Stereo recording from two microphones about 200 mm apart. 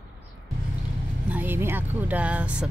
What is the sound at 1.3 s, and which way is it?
Speech, 10° right (ahead or behind).